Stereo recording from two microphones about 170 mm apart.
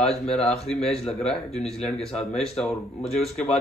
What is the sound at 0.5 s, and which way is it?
Speech, 5° left (ahead or behind).